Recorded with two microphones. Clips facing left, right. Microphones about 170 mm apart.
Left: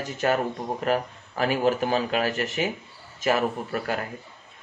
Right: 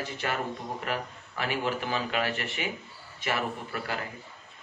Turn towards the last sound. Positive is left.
turn(degrees=45)  # may be behind; listen again after turning